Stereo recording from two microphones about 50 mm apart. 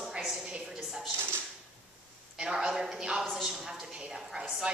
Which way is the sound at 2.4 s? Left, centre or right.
Centre.